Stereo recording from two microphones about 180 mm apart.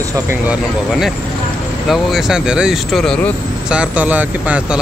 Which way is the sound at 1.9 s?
Centre (ahead or behind).